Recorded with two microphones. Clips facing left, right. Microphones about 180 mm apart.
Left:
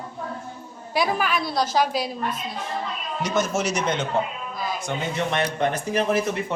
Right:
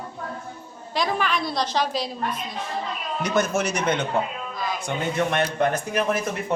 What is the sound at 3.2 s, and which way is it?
A man's voice, 55° right (ahead or behind).